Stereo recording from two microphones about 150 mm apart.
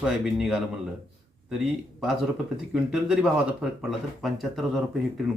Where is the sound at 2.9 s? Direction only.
5° right (ahead or behind).